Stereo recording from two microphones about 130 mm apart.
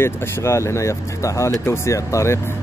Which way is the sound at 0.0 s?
20° left (ahead or behind).